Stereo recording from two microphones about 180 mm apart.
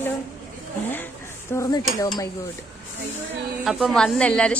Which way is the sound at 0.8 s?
10° left (ahead or behind).